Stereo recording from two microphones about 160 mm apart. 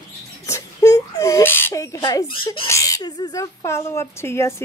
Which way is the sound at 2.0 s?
25° left (ahead or behind).